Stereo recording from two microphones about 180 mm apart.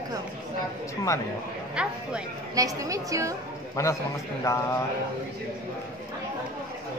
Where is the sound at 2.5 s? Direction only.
20° right (ahead or behind).